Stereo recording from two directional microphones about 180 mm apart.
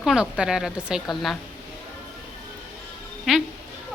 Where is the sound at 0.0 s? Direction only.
5° right (ahead or behind).